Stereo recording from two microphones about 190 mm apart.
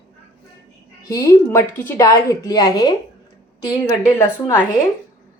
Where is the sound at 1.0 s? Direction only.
15° left (ahead or behind).